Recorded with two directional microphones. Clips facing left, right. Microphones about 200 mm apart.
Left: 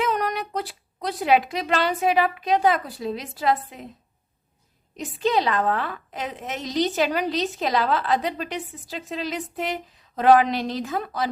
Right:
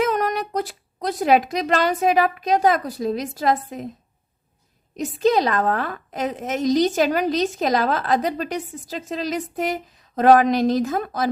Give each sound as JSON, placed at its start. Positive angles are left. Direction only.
{"t": 0.0, "sound": "a woman's voice", "side_deg": -45}
{"t": 4.9, "sound": "a woman's voice", "side_deg": -45}